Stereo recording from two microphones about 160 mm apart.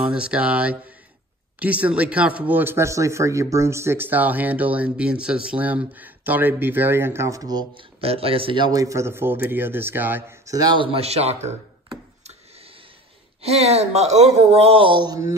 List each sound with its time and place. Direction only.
0.0 s speech: 5° right (ahead or behind); by 11.5 s 40° right (ahead or behind)
13.4 s speech: 40° right (ahead or behind); by 15.3 s 20° right (ahead or behind)